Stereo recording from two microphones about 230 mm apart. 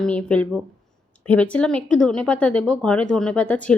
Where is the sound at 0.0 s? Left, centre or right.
Centre.